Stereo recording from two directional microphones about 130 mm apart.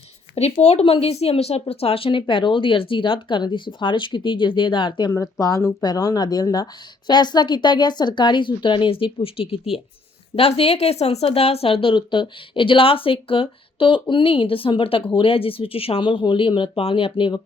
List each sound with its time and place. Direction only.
0.3 s speech: 55° left (ahead or behind)